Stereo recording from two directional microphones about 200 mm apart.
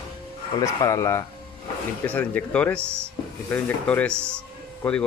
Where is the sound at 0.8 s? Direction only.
15° left (ahead or behind).